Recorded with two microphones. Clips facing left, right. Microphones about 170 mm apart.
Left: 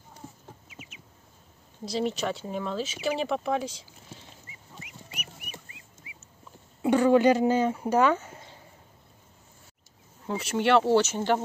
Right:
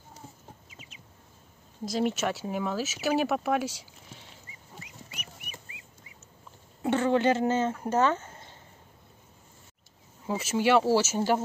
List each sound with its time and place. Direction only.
0.7 s bird: 35° right (ahead or behind)
2.0 s speech: 5° right (ahead or behind)
4.7 s a sound: 30° right (ahead or behind)
6.0 s duck: 5° left (ahead or behind)
6.8 s speech: 15° left (ahead or behind)
10.2 s speech: 5° right (ahead or behind)